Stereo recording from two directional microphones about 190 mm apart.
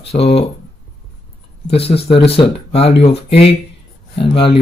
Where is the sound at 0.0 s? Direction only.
30° left (ahead or behind).